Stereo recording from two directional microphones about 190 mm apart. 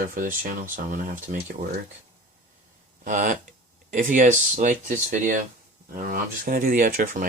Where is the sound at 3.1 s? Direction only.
45° right (ahead or behind).